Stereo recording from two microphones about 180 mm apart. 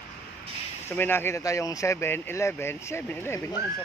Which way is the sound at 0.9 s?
10° left (ahead or behind).